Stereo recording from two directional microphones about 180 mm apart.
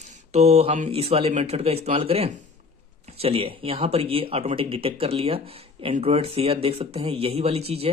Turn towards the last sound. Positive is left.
turn(degrees=-35)  # may be behind; listen again after turning